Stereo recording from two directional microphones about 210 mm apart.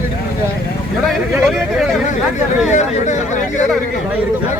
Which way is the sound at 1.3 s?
Centre (ahead or behind).